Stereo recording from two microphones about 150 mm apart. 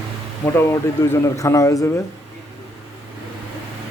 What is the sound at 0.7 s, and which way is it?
Speech, 20° left (ahead or behind).